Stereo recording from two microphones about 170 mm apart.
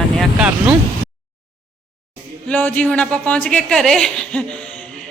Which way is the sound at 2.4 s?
10° left (ahead or behind).